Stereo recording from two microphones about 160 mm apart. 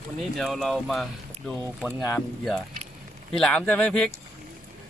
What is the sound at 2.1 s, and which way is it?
Speech, centre (ahead or behind).